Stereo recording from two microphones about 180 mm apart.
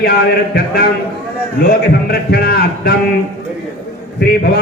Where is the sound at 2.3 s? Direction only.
60° left (ahead or behind).